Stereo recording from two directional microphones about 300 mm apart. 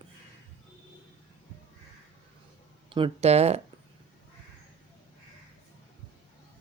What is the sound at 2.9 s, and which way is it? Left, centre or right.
Speech, centre.